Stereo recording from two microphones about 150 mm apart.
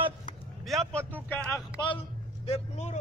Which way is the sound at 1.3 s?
15° left (ahead or behind).